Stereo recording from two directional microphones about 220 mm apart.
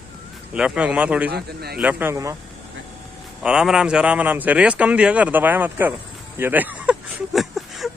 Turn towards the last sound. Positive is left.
turn(degrees=0)  # may be behind; listen again after turning